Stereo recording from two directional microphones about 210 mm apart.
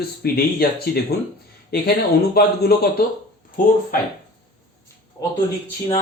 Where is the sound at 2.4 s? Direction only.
50° left (ahead or behind).